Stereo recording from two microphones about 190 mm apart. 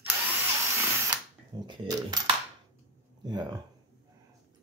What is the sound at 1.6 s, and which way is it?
Speech, 20° right (ahead or behind).